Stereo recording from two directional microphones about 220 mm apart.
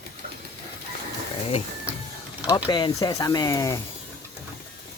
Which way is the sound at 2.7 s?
20° left (ahead or behind).